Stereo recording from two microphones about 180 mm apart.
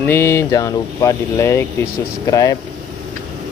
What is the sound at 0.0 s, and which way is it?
Speech, 15° left (ahead or behind).